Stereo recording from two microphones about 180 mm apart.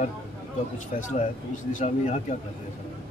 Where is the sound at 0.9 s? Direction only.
45° left (ahead or behind).